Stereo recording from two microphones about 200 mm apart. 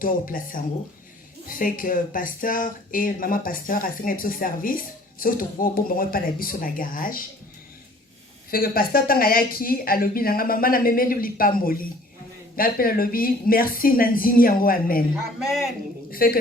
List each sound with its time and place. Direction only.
0.0 s speech: 45° left (ahead or behind)
8.4 s speech: 45° left (ahead or behind)
16.0 s a woman's voice: 45° left (ahead or behind)